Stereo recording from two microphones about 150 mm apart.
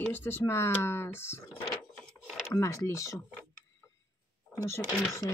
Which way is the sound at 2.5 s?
20° left (ahead or behind).